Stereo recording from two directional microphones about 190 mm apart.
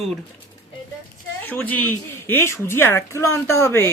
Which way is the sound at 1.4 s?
10° left (ahead or behind).